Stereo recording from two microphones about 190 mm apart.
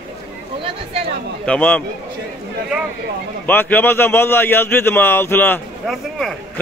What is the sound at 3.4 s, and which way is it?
A man's voice, 10° left (ahead or behind).